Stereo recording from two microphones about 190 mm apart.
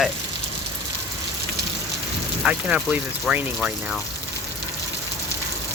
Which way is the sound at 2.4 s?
5° right (ahead or behind).